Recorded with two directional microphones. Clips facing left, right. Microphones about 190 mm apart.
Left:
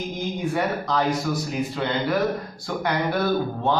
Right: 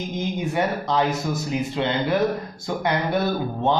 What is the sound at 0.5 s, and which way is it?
Speech, 20° right (ahead or behind).